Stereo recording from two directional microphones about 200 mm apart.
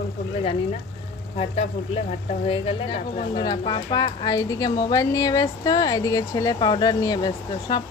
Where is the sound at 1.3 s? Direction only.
30° left (ahead or behind).